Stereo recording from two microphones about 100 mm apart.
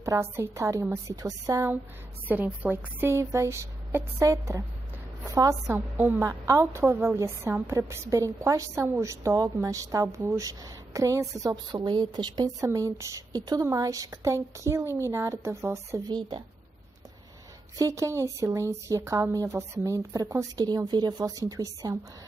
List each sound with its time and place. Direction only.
0.2 s a woman's voice: 25° right (ahead or behind)
2.2 s a woman's voice: 15° right (ahead or behind)
5.8 s a woman's voice: 20° right (ahead or behind)
6.2 s a woman's voice: 30° right (ahead or behind)
11.7 s speech: 45° right (ahead or behind)
12.6 s speech: 30° right (ahead or behind)
16.1 s speech: 50° right (ahead or behind)
17.7 s speech: 35° right (ahead or behind)